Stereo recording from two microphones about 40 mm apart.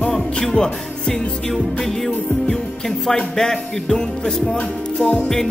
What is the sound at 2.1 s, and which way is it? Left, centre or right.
Music, left.